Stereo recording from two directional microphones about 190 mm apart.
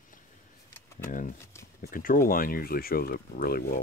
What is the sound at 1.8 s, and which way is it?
Speech, 45° left (ahead or behind).